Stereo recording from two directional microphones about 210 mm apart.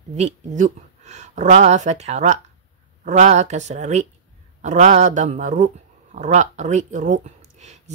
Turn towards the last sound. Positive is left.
turn(degrees=-35)  # may be behind; listen again after turning